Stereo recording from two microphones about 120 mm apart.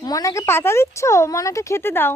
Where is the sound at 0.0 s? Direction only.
30° left (ahead or behind).